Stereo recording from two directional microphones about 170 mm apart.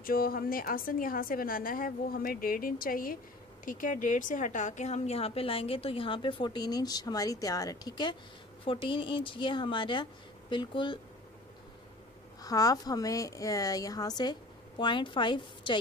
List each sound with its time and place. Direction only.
0.0 s a woman's voice: 60° left (ahead or behind); by 11.0 s 30° left (ahead or behind)
12.4 s a woman's voice: 20° left (ahead or behind)